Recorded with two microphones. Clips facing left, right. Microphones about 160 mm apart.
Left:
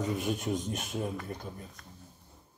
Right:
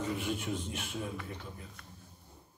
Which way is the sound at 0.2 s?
40° left (ahead or behind).